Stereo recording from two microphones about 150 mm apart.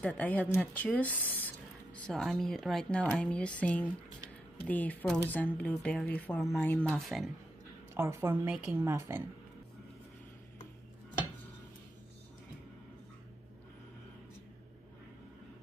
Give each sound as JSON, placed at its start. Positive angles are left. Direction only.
{"t": 0.0, "sound": "speech", "side_deg": 10}
{"t": 6.9, "sound": "speech", "side_deg": 0}
{"t": 7.9, "sound": "a woman's voice", "side_deg": -15}